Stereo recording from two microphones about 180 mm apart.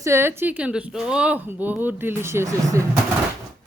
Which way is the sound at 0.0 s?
15° right (ahead or behind).